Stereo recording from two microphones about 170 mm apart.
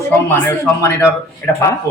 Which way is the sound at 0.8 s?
15° left (ahead or behind).